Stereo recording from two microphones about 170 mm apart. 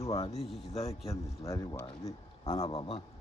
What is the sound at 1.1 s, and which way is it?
Speech, 20° left (ahead or behind).